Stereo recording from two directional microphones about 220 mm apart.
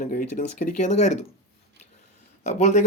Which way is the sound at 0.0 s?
40° left (ahead or behind).